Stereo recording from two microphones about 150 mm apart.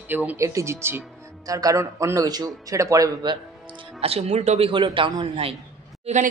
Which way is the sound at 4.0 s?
40° right (ahead or behind).